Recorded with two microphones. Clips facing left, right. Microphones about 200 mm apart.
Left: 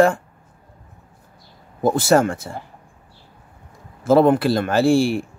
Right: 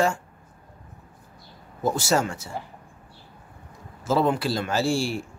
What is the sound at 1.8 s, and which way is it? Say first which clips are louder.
Speech: left 7 dB; 55° left (ahead or behind).